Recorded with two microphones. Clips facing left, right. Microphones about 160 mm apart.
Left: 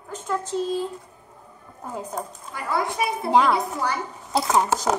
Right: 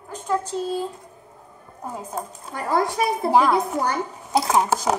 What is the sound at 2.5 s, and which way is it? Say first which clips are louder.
Speech: right 4 dB; 45° right (ahead or behind).